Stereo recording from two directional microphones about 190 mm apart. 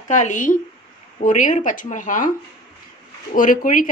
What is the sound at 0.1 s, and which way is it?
A woman's voice, 40° left (ahead or behind).